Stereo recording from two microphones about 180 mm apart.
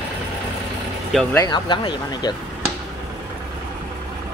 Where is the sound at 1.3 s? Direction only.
25° left (ahead or behind).